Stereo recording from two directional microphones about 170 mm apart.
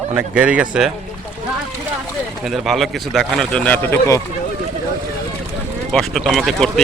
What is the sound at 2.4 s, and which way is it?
A man's voice, centre (ahead or behind).